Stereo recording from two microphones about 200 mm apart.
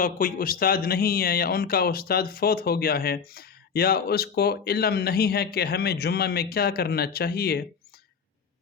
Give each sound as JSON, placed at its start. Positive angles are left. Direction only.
{"t": 0.0, "sound": "a man's voice", "side_deg": 45}